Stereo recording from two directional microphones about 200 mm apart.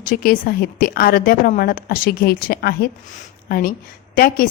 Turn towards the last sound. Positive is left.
turn(degrees=45)  # may be behind; listen again after turning